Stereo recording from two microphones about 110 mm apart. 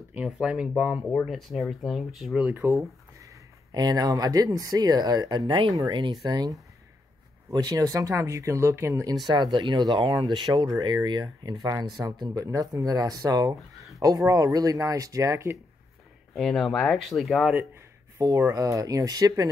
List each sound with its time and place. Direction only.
0.1 s speech: 10° right (ahead or behind)
2.4 s speech: 20° right (ahead or behind)
3.7 s speech: 35° right (ahead or behind)
9.3 s speech: 45° right (ahead or behind); by 15.5 s 30° right (ahead or behind)
16.3 s speech: centre (ahead or behind)
18.1 s speech: 30° right (ahead or behind)